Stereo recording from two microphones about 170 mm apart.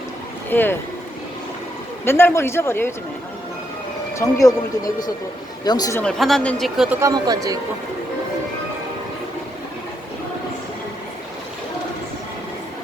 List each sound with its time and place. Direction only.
0.5 s speech: 10° left (ahead or behind)
2.0 s speech: 15° left (ahead or behind)
4.2 s speech: 20° left (ahead or behind)
6.0 s speech: 5° left (ahead or behind)
7.0 s speech: 20° right (ahead or behind)